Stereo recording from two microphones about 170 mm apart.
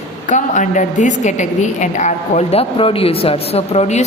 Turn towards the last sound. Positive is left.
turn(degrees=40)  # may be behind; listen again after turning